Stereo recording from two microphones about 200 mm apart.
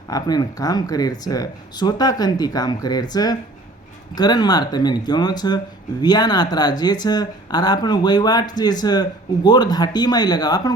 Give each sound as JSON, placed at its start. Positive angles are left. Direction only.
{"t": 0.1, "sound": "speech", "side_deg": 20}